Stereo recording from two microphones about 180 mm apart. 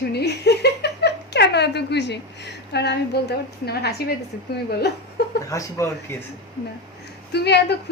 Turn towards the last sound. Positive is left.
turn(degrees=65)  # may be behind; listen again after turning